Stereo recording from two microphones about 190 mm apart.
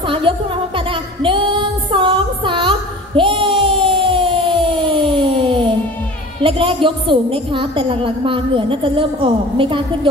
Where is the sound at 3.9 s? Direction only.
25° right (ahead or behind).